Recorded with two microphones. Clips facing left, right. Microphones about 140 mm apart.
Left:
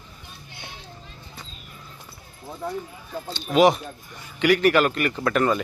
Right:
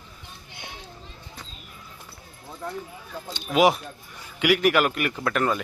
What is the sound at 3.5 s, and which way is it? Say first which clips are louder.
A woman's voice: left 2 dB; 10° right (ahead or behind).